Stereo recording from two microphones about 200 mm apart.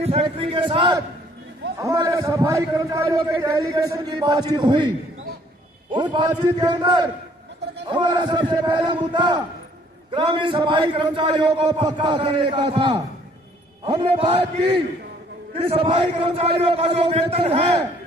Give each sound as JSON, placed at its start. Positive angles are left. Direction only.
{"t": 0.0, "sound": "a man's voice", "side_deg": -30}